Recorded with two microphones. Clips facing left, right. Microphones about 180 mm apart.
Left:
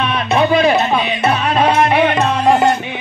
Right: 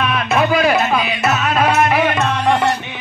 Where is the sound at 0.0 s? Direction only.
30° left (ahead or behind).